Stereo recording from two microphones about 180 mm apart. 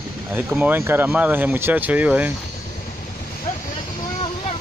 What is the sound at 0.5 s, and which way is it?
Speech, 10° right (ahead or behind).